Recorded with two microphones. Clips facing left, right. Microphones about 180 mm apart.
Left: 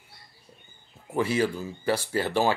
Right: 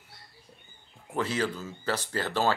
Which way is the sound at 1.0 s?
10° left (ahead or behind).